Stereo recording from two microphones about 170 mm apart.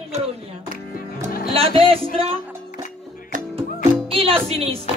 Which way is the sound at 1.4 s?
35° right (ahead or behind).